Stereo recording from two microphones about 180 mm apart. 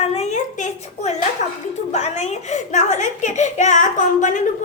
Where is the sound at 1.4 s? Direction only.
45° left (ahead or behind).